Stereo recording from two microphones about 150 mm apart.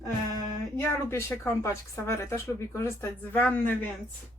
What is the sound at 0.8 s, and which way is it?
Speech, 15° left (ahead or behind).